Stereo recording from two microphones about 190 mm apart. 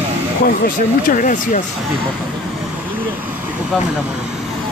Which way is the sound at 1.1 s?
45° left (ahead or behind).